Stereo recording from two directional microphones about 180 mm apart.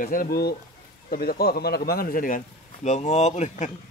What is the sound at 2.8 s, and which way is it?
Speech, 40° left (ahead or behind).